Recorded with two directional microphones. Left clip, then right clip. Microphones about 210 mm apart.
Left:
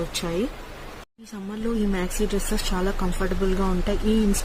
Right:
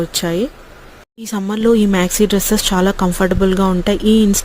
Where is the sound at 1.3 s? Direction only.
45° right (ahead or behind).